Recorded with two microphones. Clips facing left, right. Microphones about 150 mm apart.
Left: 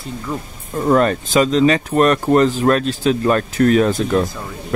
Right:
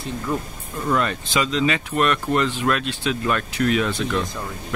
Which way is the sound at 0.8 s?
45° left (ahead or behind).